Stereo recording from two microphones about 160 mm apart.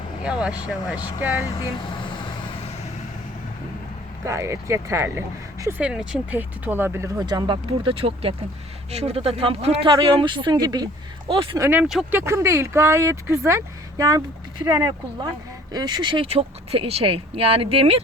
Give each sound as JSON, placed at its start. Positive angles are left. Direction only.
{"t": 0.2, "sound": "speech", "side_deg": -5}
{"t": 1.5, "sound": "vehicle", "side_deg": 30}
{"t": 4.3, "sound": "speech", "side_deg": -20}
{"t": 5.8, "sound": "speech", "side_deg": -5}
{"t": 11.8, "sound": "speech", "side_deg": 0}
{"t": 12.1, "sound": "speech", "side_deg": -15}
{"t": 14.6, "sound": "speech", "side_deg": -20}